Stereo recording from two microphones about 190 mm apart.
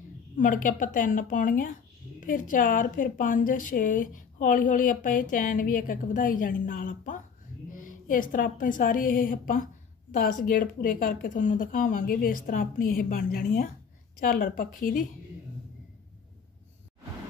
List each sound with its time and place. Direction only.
0.4 s a woman's voice: 45° left (ahead or behind)